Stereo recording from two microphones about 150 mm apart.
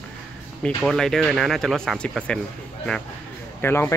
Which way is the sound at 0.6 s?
5° left (ahead or behind).